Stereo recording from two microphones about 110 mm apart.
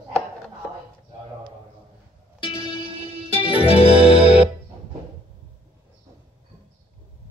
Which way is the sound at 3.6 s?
65° left (ahead or behind).